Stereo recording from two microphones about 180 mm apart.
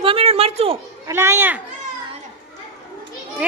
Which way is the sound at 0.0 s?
30° right (ahead or behind).